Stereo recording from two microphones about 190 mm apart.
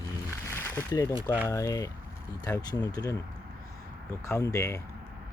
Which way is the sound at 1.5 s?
15° left (ahead or behind).